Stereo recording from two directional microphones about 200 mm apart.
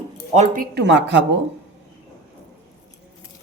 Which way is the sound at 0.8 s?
60° right (ahead or behind).